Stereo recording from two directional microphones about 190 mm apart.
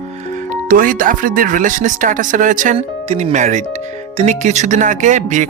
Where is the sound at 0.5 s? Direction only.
45° right (ahead or behind).